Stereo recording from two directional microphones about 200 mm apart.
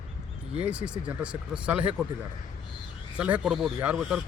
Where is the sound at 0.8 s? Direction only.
5° right (ahead or behind).